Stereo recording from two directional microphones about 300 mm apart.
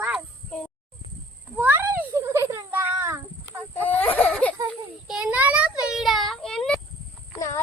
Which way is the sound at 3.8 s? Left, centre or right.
Centre.